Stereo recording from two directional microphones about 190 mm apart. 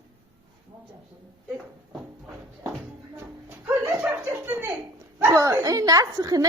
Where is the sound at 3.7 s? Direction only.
5° right (ahead or behind).